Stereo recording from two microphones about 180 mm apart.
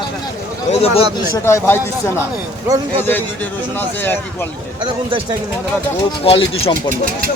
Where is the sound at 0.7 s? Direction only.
35° left (ahead or behind).